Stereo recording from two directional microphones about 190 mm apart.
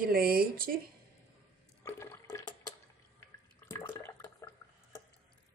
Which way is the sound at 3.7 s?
15° left (ahead or behind).